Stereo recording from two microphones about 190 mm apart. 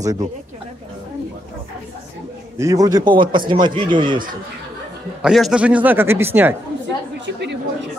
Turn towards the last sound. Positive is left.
turn(degrees=-65)  # may be behind; listen again after turning